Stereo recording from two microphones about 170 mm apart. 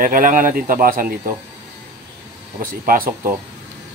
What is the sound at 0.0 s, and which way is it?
Speech, 55° right (ahead or behind).